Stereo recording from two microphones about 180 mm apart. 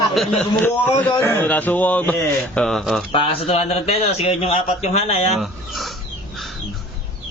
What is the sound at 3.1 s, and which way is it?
A man's voice, 30° left (ahead or behind).